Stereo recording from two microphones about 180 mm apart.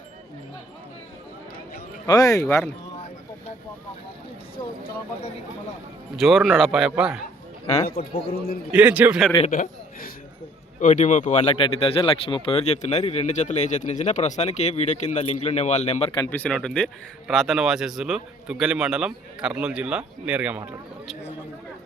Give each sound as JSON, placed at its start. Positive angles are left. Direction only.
{"t": 2.0, "sound": "speech", "side_deg": 20}
{"t": 6.1, "sound": "speech", "side_deg": 0}
{"t": 7.9, "sound": "a man's voice", "side_deg": 55}
{"t": 8.7, "sound": "a man's voice", "side_deg": -10}
{"t": 9.5, "sound": "a man's voice", "side_deg": 50}
{"t": 11.5, "sound": "speech", "side_deg": 30}
{"t": 16.3, "sound": "speech", "side_deg": 5}